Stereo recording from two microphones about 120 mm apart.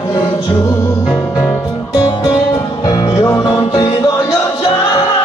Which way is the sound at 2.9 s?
30° left (ahead or behind).